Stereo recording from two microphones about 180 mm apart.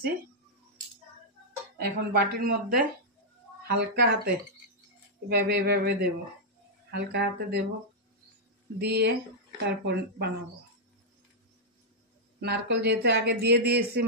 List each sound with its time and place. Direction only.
1.8 s speech: 60° right (ahead or behind)
8.7 s a man's voice: 65° right (ahead or behind)
12.4 s a man's voice: 65° right (ahead or behind)